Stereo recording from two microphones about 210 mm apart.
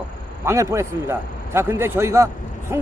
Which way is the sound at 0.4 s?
15° right (ahead or behind).